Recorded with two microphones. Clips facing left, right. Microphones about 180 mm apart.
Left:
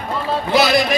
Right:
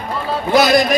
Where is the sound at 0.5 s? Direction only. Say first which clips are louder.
Right 3 dB; 45° right (ahead or behind).